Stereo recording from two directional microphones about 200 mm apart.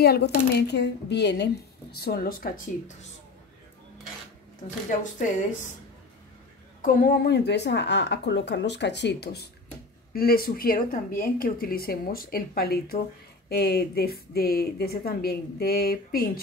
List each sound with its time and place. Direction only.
0.0 s speech: 55° left (ahead or behind)
5.2 s speech: 40° left (ahead or behind)
6.8 s a woman's voice: 50° left (ahead or behind)